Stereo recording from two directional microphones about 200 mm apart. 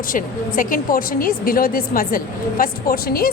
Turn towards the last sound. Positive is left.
turn(degrees=50)  # may be behind; listen again after turning